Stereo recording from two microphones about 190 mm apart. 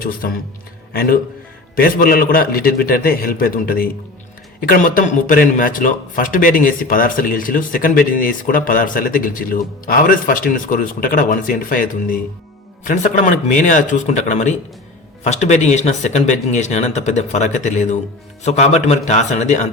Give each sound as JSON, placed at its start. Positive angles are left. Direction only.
{"t": 0.0, "sound": "speech", "side_deg": 50}
{"t": 1.7, "sound": "speech", "side_deg": 50}